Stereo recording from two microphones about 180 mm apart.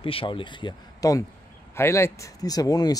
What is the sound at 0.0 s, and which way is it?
Speech, 30° left (ahead or behind).